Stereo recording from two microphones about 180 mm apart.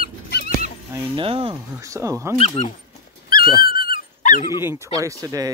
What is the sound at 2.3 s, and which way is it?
Speech, 35° left (ahead or behind).